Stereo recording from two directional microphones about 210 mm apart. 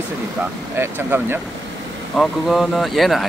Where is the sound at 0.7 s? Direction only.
10° right (ahead or behind).